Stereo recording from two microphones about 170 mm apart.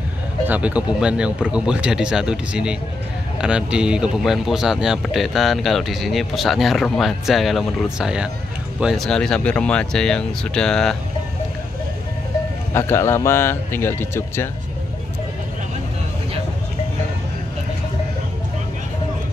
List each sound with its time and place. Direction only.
0.5 s speech: 5° right (ahead or behind)
12.7 s a man's voice: 15° left (ahead or behind)